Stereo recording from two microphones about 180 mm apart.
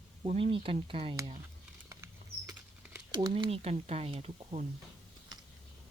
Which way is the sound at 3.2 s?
30° right (ahead or behind).